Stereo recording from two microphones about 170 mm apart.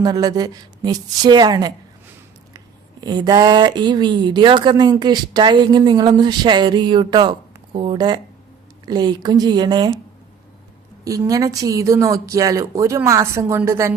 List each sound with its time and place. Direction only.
0.0 s speech: 25° right (ahead or behind)
3.0 s speech: 25° right (ahead or behind)
11.0 s speech: 20° right (ahead or behind)